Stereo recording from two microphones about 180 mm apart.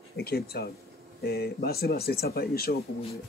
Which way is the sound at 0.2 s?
60° left (ahead or behind).